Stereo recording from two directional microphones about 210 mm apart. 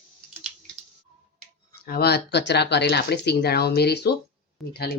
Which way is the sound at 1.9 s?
50° left (ahead or behind).